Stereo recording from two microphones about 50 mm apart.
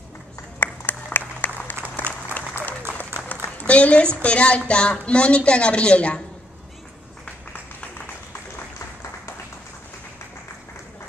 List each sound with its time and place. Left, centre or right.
0.6 s applause: left
3.3 s a woman's voice: left